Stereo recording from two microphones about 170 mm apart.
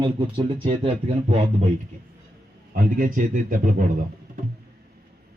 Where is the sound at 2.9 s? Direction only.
55° right (ahead or behind).